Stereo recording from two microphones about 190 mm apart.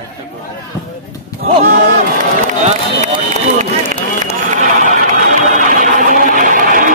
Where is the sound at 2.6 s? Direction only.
35° right (ahead or behind).